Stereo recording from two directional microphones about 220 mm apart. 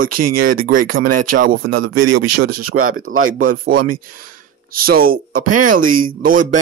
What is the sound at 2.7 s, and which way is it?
Speech, 70° right (ahead or behind).